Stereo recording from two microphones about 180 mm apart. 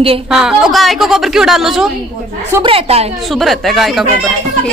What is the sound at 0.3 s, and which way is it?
A woman's voice, centre (ahead or behind).